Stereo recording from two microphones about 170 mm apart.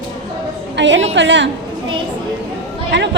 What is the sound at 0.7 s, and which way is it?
Speech, 90° right.